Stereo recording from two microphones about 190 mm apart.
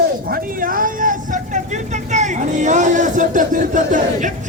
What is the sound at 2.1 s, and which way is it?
Speech, 40° right (ahead or behind).